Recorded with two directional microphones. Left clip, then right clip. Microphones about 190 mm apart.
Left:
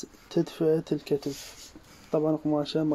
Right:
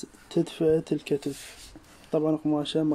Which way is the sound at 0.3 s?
10° right (ahead or behind).